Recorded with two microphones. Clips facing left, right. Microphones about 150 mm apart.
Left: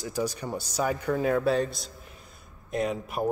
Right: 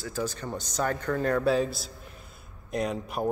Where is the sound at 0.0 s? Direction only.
15° left (ahead or behind).